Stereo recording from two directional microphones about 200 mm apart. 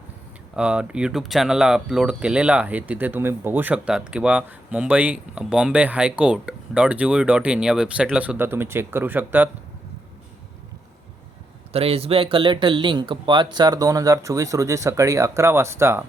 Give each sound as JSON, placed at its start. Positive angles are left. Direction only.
{"t": 0.5, "sound": "speech", "side_deg": -5}
{"t": 11.7, "sound": "speech", "side_deg": -30}